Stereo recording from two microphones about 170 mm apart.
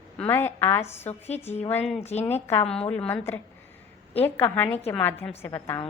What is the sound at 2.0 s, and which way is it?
Speech, 40° left (ahead or behind).